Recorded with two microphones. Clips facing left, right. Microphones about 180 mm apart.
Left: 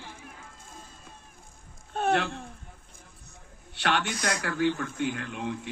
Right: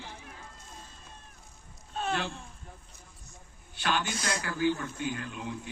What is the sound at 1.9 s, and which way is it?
Speech, 60° left (ahead or behind).